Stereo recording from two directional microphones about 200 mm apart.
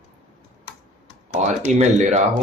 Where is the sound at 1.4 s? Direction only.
35° right (ahead or behind).